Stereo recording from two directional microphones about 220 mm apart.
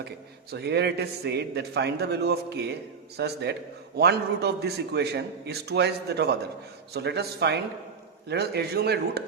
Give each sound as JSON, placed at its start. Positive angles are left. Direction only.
{"t": 0.5, "sound": "a man's voice", "side_deg": -50}